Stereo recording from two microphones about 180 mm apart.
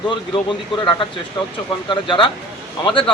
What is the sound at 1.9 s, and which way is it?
Speech, 25° left (ahead or behind).